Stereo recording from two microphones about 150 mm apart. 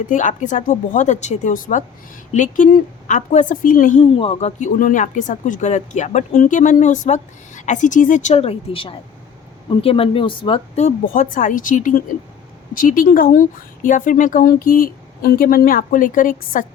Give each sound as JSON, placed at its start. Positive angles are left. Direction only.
{"t": 0.1, "sound": "speech", "side_deg": 55}
{"t": 4.0, "sound": "speech", "side_deg": 40}
{"t": 4.8, "sound": "speech", "side_deg": 60}
{"t": 10.8, "sound": "speech", "side_deg": 55}